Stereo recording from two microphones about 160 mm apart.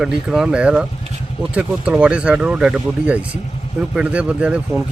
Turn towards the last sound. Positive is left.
turn(degrees=-5)  # may be behind; listen again after turning